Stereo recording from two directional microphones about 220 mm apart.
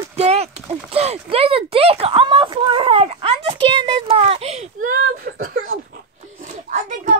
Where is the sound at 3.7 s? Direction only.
25° right (ahead or behind); by 5.6 s 40° right (ahead or behind).